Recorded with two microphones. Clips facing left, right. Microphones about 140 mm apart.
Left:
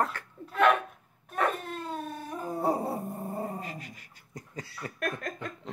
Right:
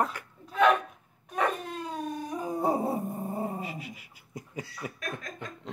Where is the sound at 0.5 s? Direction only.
5° left (ahead or behind).